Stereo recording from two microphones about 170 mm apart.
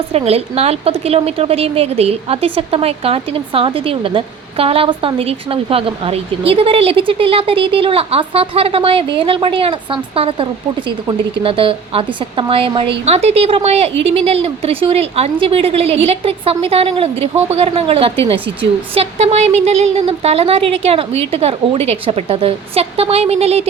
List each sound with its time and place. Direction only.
0.1 s a woman's voice: 35° right (ahead or behind)